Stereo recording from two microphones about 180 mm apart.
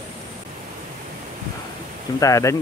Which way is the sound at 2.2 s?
15° left (ahead or behind).